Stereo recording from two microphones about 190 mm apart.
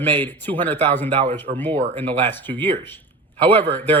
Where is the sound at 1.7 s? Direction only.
35° right (ahead or behind).